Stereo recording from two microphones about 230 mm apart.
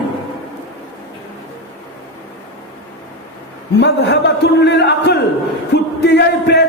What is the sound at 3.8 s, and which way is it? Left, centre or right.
A man's voice, left.